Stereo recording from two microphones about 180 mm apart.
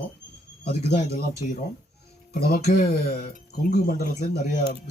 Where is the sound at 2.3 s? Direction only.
55° left (ahead or behind).